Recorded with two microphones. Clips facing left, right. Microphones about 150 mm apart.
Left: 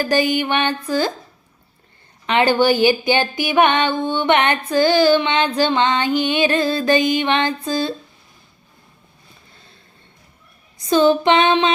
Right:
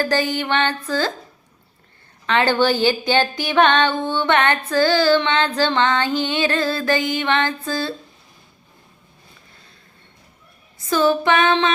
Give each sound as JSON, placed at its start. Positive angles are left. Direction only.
{"t": 0.0, "sound": "speech", "side_deg": 15}
{"t": 2.2, "sound": "speech", "side_deg": 15}
{"t": 10.8, "sound": "female singing", "side_deg": 20}